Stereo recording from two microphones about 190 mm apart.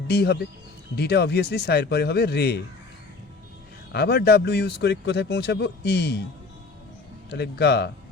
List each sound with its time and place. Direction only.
0.1 s speech: 60° left (ahead or behind)
3.9 s speech: 55° left (ahead or behind)
7.3 s speech: 60° left (ahead or behind)